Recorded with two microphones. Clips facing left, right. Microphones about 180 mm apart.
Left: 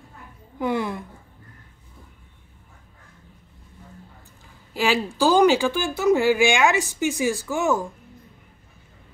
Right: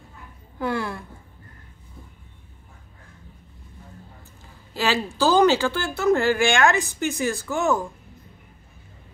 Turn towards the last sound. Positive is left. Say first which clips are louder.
# even
turn(degrees=10)  # may be behind; listen again after turning